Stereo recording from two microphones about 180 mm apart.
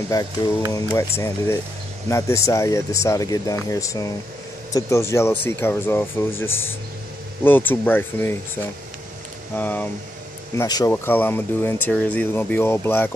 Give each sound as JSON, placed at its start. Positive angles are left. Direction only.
{"t": 0.1, "sound": "speech", "side_deg": 20}
{"t": 9.6, "sound": "speech", "side_deg": 10}
{"t": 10.6, "sound": "speech", "side_deg": 20}
{"t": 10.9, "sound": "speech", "side_deg": 10}